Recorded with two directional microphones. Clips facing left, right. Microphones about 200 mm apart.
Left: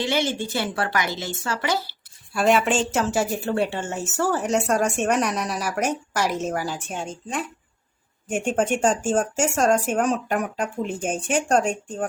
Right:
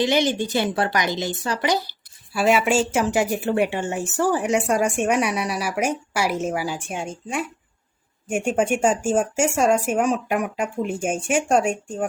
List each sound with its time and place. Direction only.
0.0 s a woman's voice: 15° right (ahead or behind)
2.3 s a woman's voice: 5° right (ahead or behind)